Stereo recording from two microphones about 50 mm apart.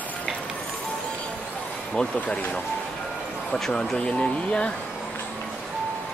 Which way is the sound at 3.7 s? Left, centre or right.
Centre.